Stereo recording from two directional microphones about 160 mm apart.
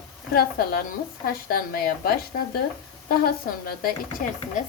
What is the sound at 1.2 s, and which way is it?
Speech, 65° left (ahead or behind).